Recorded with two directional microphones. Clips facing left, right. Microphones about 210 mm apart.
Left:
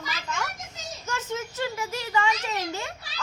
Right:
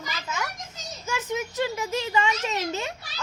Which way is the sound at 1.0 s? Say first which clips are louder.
Right 3 dB; 15° right (ahead or behind).